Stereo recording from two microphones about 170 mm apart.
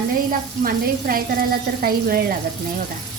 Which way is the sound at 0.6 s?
60° right (ahead or behind).